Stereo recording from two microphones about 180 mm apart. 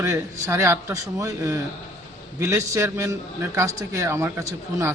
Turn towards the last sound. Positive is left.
turn(degrees=-15)  # may be behind; listen again after turning